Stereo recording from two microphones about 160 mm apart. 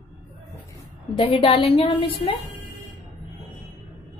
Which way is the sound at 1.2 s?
35° left (ahead or behind).